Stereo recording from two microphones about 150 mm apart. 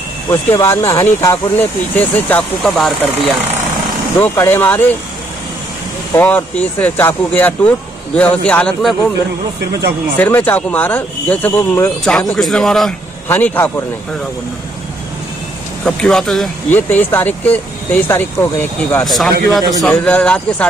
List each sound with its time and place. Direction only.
0.3 s speech: 20° left (ahead or behind); by 3.4 s centre (ahead or behind)
4.2 s speech: 15° left (ahead or behind)
6.1 s speech: 10° left (ahead or behind)
9.7 s speech: 90° right
10.1 s speech: 10° left (ahead or behind)
12.0 s speech: 5° left (ahead or behind)
13.3 s speech: 15° left (ahead or behind)
15.8 s speech: 5° left (ahead or behind)
16.7 s speech: 15° left (ahead or behind)
19.0 s speech: centre (ahead or behind)